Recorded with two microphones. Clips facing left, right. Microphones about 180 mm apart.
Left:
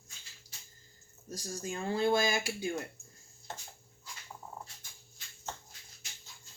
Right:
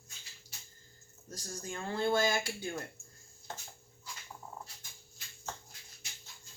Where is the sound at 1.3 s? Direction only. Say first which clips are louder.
Left 4 dB; 15° left (ahead or behind).